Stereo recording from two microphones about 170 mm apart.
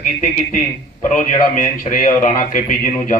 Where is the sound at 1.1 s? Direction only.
50° left (ahead or behind).